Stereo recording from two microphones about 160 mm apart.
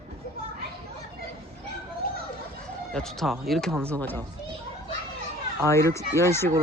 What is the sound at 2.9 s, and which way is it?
Speech, 5° left (ahead or behind).